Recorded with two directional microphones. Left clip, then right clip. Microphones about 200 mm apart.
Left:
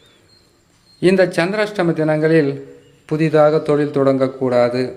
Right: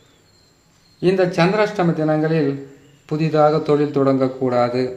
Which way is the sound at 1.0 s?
20° left (ahead or behind).